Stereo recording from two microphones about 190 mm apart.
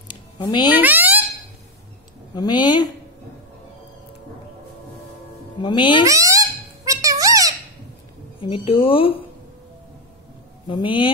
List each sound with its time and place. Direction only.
0.1 s music: 25° left (ahead or behind)
0.7 s speech: 10° right (ahead or behind)
2.3 s speech: 20° left (ahead or behind)
5.6 s speech: 25° left (ahead or behind)
6.0 s a sound: 15° right (ahead or behind)
8.4 s speech: 30° left (ahead or behind)
10.7 s speech: 25° left (ahead or behind)